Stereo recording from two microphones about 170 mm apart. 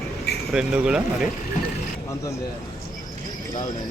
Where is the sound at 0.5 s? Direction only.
5° right (ahead or behind).